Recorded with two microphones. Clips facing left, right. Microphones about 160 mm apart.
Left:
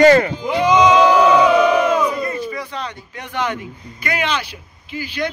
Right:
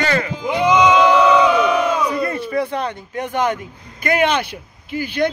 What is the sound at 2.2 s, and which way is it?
Speech, 60° right (ahead or behind).